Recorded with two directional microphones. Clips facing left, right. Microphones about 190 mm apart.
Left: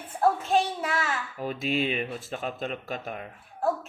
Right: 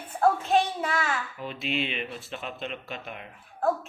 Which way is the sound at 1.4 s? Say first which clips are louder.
Left 7 dB; 40° left (ahead or behind).